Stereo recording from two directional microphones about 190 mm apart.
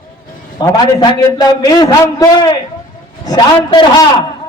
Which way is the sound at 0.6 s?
20° left (ahead or behind).